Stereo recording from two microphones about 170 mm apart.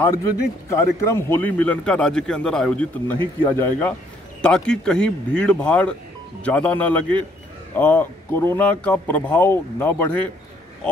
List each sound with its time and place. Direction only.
0.0 s a man's voice: 20° left (ahead or behind)